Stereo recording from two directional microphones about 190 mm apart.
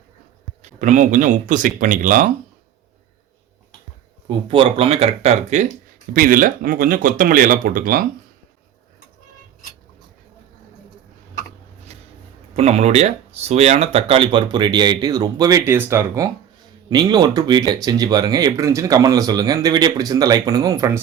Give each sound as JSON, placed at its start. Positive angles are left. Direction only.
{"t": 0.6, "sound": "speech", "side_deg": -40}
{"t": 4.3, "sound": "speech", "side_deg": -25}
{"t": 6.1, "sound": "speech", "side_deg": -45}
{"t": 11.9, "sound": "a sound", "side_deg": -35}
{"t": 12.5, "sound": "speech", "side_deg": -35}